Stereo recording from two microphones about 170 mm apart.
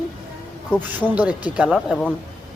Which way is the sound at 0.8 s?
10° right (ahead or behind).